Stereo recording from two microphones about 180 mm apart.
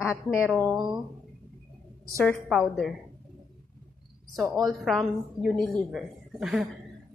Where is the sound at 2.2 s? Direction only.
5° left (ahead or behind).